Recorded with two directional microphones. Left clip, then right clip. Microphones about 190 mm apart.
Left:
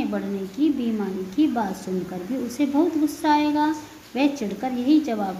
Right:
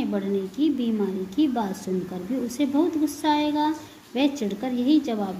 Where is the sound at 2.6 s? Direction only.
15° right (ahead or behind).